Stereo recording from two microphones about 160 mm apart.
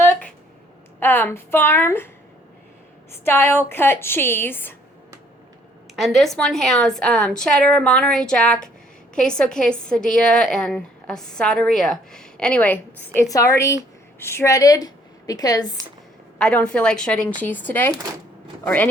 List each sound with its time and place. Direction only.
0.9 s a woman's voice: 15° left (ahead or behind)
3.2 s a woman's voice: 15° left (ahead or behind)
6.0 s a woman's voice: centre (ahead or behind)
13.1 s a woman's voice: 20° left (ahead or behind)
16.4 s a woman's voice: 5° left (ahead or behind)